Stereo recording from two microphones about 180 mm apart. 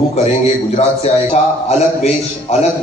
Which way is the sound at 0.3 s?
35° left (ahead or behind).